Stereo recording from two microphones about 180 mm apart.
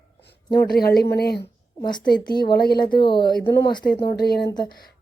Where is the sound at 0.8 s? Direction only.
60° left (ahead or behind).